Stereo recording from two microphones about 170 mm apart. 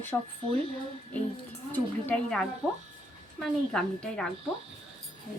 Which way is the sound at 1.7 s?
10° left (ahead or behind).